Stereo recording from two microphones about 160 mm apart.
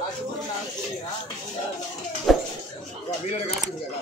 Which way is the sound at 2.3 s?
Centre (ahead or behind).